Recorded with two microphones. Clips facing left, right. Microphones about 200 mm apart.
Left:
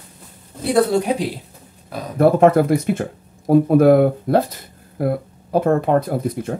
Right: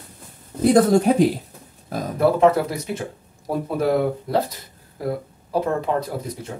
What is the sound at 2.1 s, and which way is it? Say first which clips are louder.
Speech: left 4 dB; 50° left (ahead or behind).